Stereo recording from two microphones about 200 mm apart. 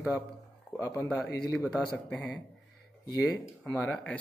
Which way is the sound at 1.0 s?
5° left (ahead or behind).